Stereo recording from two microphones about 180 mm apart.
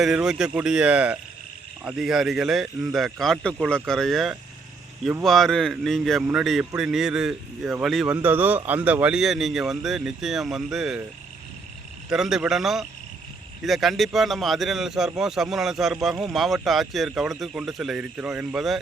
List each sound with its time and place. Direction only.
0.0 s speech: 5° right (ahead or behind)
12.1 s speech: 5° right (ahead or behind)